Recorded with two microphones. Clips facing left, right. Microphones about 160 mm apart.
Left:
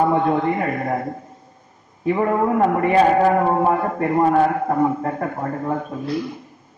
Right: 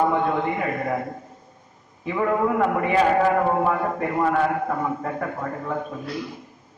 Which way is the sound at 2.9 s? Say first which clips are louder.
Left 4 dB; 30° left (ahead or behind).